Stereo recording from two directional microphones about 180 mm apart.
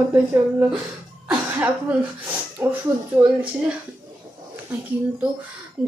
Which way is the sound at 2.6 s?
15° right (ahead or behind).